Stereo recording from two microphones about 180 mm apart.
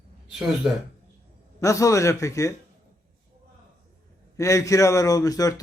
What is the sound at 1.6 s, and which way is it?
Speech, 15° left (ahead or behind).